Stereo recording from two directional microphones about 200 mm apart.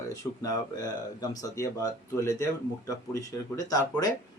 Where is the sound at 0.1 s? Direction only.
20° left (ahead or behind).